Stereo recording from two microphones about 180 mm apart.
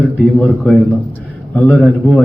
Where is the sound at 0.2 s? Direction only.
5° left (ahead or behind).